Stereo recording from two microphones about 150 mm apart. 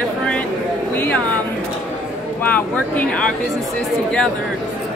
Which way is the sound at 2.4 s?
10° left (ahead or behind).